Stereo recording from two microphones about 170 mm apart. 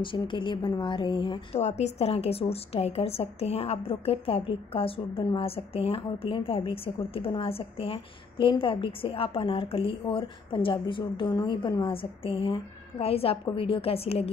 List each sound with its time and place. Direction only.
0.0 s a woman's voice: 30° left (ahead or behind)
1.6 s a woman's voice: 40° left (ahead or behind)